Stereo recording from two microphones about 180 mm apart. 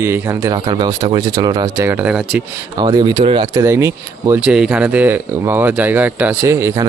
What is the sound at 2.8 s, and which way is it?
Speech, 25° right (ahead or behind).